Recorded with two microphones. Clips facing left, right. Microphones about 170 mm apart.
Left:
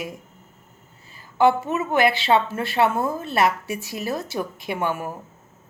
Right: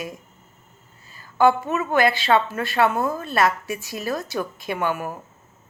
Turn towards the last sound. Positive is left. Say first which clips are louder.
# right 1 dB
turn(degrees=25)  # may be behind; listen again after turning